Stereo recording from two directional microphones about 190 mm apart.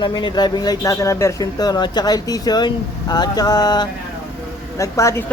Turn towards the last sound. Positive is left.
turn(degrees=15)  # may be behind; listen again after turning